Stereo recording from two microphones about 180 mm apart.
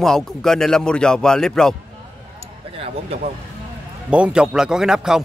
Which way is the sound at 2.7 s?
35° right (ahead or behind).